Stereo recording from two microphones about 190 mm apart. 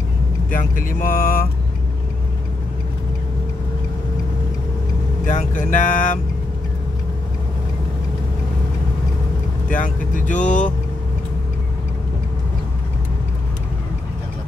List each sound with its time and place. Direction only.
0.5 s speech: 45° left (ahead or behind)
5.2 s speech: 40° left (ahead or behind)
9.8 s speech: 45° left (ahead or behind)